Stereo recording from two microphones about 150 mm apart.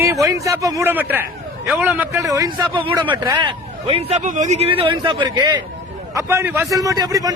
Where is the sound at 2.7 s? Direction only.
35° right (ahead or behind).